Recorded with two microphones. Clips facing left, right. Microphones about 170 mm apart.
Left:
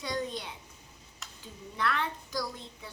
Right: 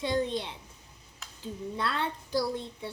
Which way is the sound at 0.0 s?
25° right (ahead or behind).